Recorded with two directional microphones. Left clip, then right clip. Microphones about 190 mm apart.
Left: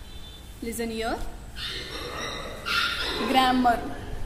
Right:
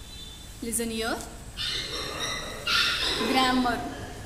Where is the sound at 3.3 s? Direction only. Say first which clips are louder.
Left 4 dB; 15° left (ahead or behind).